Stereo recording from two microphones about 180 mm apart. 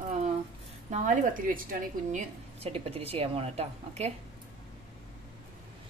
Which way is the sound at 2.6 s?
35° right (ahead or behind).